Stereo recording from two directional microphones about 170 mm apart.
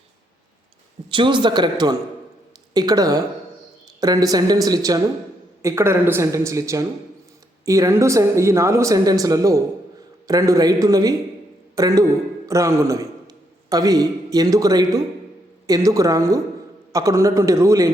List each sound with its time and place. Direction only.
1.1 s a man's voice: 30° right (ahead or behind)